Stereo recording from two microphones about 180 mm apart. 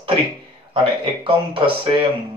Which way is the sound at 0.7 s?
30° right (ahead or behind).